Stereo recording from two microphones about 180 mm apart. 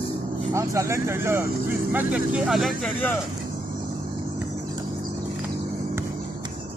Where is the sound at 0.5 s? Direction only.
15° right (ahead or behind); by 2.9 s centre (ahead or behind).